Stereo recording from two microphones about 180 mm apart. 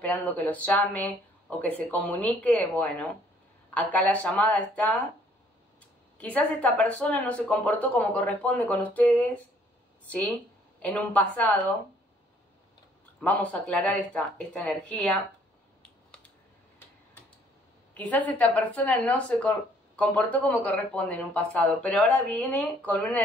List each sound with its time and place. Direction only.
0.0 s speech: 10° left (ahead or behind)
6.1 s speech: 5° left (ahead or behind)
13.2 s speech: 10° left (ahead or behind)
17.9 s speech: 10° left (ahead or behind)